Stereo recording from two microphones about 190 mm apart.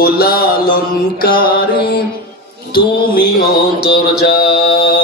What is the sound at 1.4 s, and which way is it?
Music, 50° left (ahead or behind).